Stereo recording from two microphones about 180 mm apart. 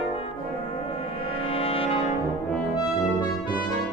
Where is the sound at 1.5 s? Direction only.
30° left (ahead or behind).